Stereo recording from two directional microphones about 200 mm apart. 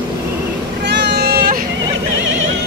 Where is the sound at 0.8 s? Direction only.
55° right (ahead or behind).